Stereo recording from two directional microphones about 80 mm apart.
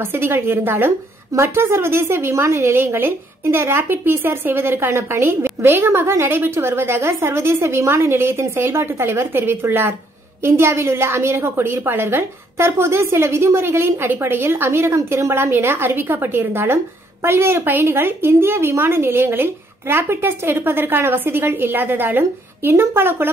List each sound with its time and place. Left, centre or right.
0.0 s a woman's voice: right